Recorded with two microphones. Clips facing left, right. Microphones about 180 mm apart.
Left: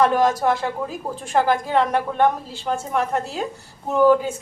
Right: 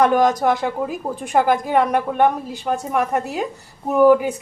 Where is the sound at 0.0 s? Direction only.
15° right (ahead or behind).